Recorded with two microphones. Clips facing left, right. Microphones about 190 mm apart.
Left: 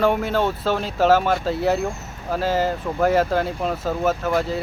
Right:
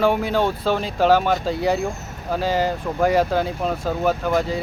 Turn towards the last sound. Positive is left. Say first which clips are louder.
# right 1 dB
turn(degrees=0)  # may be behind; listen again after turning